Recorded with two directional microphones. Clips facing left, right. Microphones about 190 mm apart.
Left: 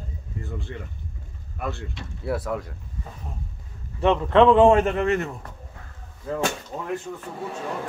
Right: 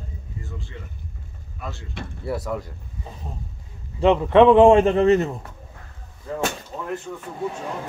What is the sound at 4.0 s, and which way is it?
A man's voice, 15° right (ahead or behind).